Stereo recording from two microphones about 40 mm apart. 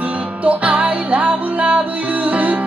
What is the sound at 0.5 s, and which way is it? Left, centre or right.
Music, right.